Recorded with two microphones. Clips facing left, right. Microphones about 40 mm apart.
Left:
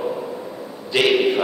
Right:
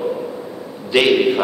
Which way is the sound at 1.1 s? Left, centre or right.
Centre.